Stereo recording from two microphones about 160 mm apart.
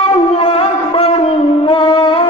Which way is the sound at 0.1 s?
35° left (ahead or behind).